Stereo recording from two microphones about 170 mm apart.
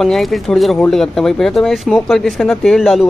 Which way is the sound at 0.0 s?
Centre (ahead or behind).